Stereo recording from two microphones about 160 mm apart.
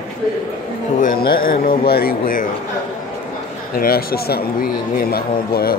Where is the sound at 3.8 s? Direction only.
70° left (ahead or behind).